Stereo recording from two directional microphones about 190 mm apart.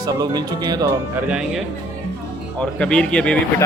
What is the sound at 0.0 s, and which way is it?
Speech, 20° right (ahead or behind).